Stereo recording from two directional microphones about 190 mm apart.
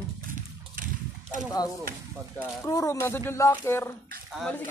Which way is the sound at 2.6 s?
15° left (ahead or behind).